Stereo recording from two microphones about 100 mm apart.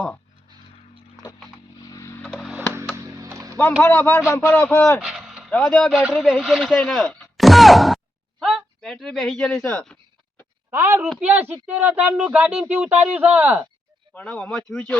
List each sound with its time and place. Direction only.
1.2 s a sound: 45° left (ahead or behind)
2.2 s music: centre (ahead or behind)
2.7 s music: 30° right (ahead or behind)
3.8 s a sound: 20° left (ahead or behind)
4.4 s speech: 15° left (ahead or behind)
4.9 s vehicle: 5° right (ahead or behind)
5.5 s speech: 10° left (ahead or behind)
6.8 s music: 10° left (ahead or behind)
10.7 s a woman's voice: 30° right (ahead or behind)
11.2 s speech: 15° right (ahead or behind)
14.1 s speech: 15° left (ahead or behind)